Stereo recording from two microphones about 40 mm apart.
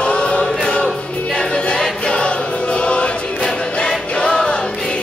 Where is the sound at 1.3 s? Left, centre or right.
Left.